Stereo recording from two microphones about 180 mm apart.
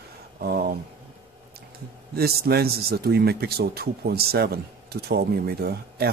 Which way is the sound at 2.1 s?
60° right (ahead or behind).